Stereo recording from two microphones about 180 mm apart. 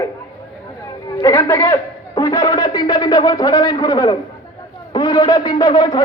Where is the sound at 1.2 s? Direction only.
10° left (ahead or behind).